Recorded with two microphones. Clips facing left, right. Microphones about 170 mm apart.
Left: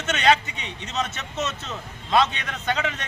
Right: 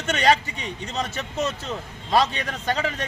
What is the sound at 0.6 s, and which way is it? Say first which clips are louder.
Speech: even; 35° right (ahead or behind).